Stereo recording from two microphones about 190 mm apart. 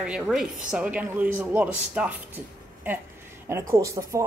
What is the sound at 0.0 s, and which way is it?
A woman's voice, 5° right (ahead or behind).